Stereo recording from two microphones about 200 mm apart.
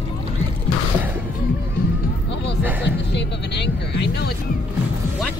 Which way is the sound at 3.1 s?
60° left (ahead or behind).